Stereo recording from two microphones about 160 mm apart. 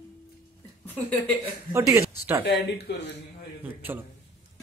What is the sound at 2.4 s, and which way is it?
Speech, 90° left.